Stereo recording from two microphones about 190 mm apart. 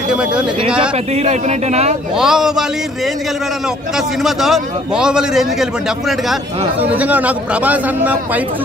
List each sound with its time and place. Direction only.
0.1 s a man's voice: 5° right (ahead or behind)
1.1 s a man's voice: 35° right (ahead or behind)
2.1 s a man's voice: 5° right (ahead or behind)
4.2 s a man's voice: centre (ahead or behind)